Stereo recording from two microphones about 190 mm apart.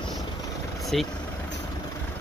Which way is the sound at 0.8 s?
Centre (ahead or behind).